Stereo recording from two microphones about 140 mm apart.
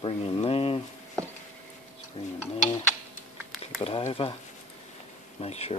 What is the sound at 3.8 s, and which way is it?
Speech, 45° left (ahead or behind).